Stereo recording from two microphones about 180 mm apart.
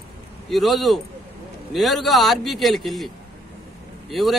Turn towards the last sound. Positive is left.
turn(degrees=0)  # may be behind; listen again after turning